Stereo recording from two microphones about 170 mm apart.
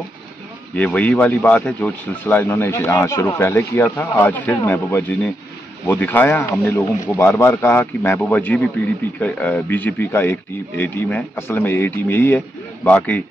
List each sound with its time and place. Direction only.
0.7 s a man's voice: 10° left (ahead or behind)